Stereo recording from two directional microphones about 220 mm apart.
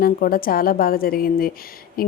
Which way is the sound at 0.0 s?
40° left (ahead or behind).